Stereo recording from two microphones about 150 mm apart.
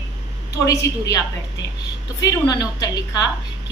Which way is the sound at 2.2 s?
25° left (ahead or behind).